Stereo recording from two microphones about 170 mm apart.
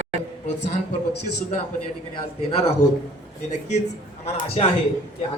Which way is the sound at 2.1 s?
35° left (ahead or behind).